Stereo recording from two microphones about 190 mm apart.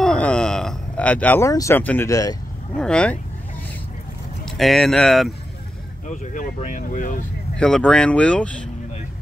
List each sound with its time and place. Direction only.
0.0 s speech: 5° left (ahead or behind)
2.8 s speech: 5° left (ahead or behind)
4.5 s speech: centre (ahead or behind)
6.0 s speech: 40° left (ahead or behind)
7.5 s speech: 5° left (ahead or behind)